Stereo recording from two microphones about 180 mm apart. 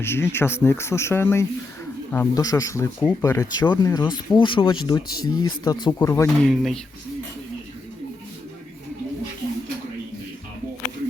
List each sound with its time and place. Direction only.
0.0 s speech: 15° left (ahead or behind)
6.4 s speech: centre (ahead or behind)